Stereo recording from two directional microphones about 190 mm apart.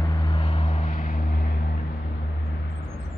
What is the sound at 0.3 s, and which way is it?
Vehicle, 30° left (ahead or behind).